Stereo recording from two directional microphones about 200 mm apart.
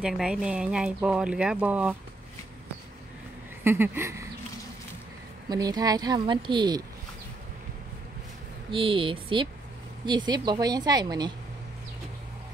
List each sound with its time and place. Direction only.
0.0 s speech: 5° right (ahead or behind)
3.6 s a sound: 10° right (ahead or behind)
5.5 s a woman's voice: 20° right (ahead or behind)
8.6 s a woman's voice: 25° right (ahead or behind)